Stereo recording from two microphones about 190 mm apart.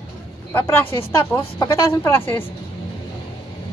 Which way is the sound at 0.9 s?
25° left (ahead or behind).